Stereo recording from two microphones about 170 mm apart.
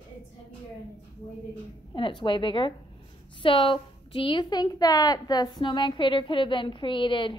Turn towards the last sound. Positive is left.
turn(degrees=30)  # may be behind; listen again after turning